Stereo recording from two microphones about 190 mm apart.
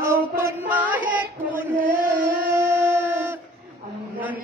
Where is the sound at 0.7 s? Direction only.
10° right (ahead or behind).